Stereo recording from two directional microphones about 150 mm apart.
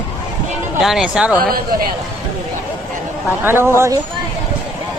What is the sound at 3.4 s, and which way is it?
Speech, 15° right (ahead or behind).